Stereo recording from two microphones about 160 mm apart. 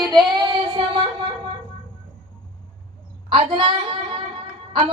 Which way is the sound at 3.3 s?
30° right (ahead or behind).